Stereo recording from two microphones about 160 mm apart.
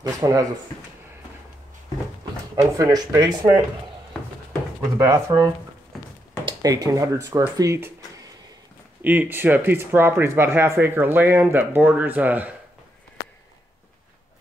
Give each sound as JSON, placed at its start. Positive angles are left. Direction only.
{"t": 0.0, "sound": "speech", "side_deg": -20}
{"t": 2.5, "sound": "speech", "side_deg": -20}
{"t": 4.9, "sound": "speech", "side_deg": -15}
{"t": 9.0, "sound": "speech", "side_deg": -10}